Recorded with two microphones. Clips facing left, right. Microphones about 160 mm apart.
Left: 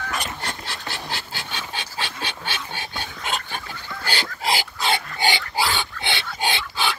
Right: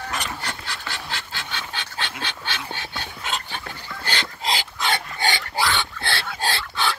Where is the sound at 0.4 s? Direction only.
25° left (ahead or behind).